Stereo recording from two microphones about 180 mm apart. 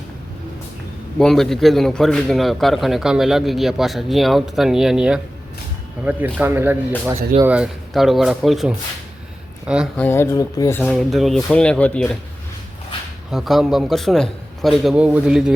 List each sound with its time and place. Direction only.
1.2 s speech: centre (ahead or behind)
10.0 s speech: 15° left (ahead or behind)
13.3 s speech: centre (ahead or behind)